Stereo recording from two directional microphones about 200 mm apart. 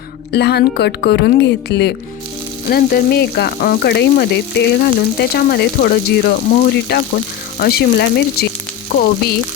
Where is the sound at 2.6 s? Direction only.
50° left (ahead or behind).